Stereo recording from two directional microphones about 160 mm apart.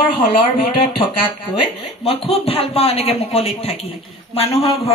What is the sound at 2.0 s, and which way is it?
Speech, 40° left (ahead or behind).